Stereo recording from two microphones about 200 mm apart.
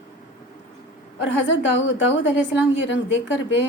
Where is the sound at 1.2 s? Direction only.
65° left (ahead or behind).